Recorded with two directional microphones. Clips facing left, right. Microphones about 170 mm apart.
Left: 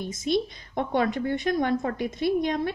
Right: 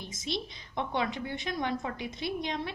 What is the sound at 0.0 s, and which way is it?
A woman's voice, 50° left (ahead or behind).